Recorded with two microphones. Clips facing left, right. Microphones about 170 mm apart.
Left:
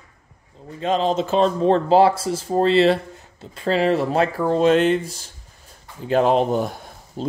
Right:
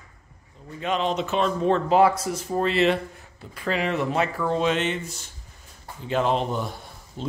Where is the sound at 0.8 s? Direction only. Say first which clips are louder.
Left 5 dB; 35° left (ahead or behind).